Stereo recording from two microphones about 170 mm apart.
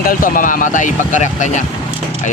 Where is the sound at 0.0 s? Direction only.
55° left (ahead or behind).